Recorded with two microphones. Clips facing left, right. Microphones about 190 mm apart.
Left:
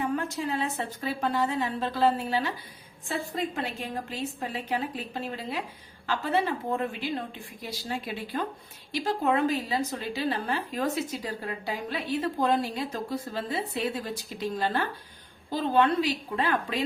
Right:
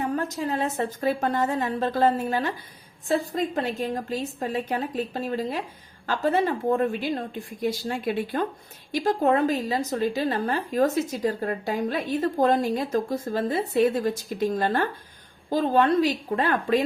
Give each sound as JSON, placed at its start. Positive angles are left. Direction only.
{"t": 0.0, "sound": "a woman's voice", "side_deg": -40}